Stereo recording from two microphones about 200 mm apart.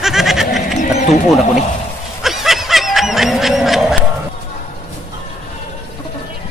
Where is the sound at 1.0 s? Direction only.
Centre (ahead or behind).